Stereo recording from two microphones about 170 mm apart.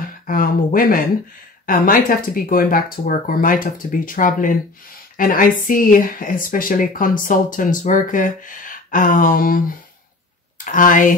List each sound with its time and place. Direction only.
0.3 s speech: 55° left (ahead or behind)